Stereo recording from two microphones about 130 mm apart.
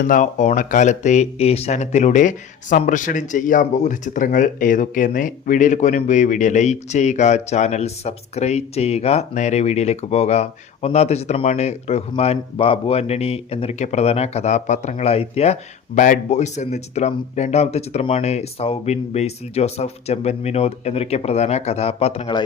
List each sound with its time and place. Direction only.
0.0 s speech: 80° left; by 15.5 s 55° left (ahead or behind)
16.0 s speech: 70° left (ahead or behind); by 22.3 s 50° left (ahead or behind)